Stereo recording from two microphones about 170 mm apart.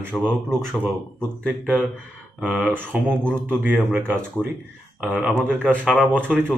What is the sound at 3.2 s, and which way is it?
Speech, 5° left (ahead or behind).